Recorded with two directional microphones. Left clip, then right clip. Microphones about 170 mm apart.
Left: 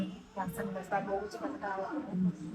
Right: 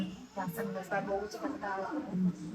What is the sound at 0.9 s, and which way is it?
Speech, centre (ahead or behind).